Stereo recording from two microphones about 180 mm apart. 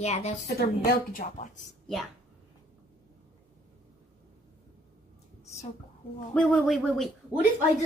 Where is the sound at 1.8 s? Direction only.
Centre (ahead or behind).